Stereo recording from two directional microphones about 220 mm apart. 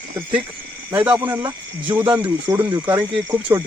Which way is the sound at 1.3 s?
20° right (ahead or behind).